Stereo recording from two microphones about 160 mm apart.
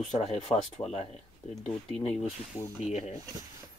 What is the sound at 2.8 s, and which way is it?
Speech, 45° left (ahead or behind).